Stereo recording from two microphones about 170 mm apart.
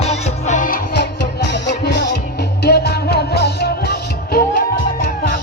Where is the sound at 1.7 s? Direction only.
90° left.